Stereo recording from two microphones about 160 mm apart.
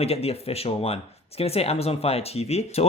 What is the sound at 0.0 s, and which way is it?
Speech, 40° left (ahead or behind).